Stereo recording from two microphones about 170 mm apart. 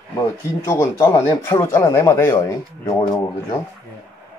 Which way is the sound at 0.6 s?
15° left (ahead or behind).